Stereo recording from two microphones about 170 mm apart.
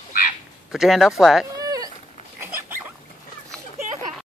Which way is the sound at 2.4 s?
15° right (ahead or behind).